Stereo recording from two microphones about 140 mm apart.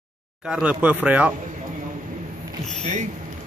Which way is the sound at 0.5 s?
10° right (ahead or behind).